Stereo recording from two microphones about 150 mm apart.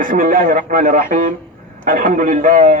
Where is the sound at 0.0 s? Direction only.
65° right (ahead or behind).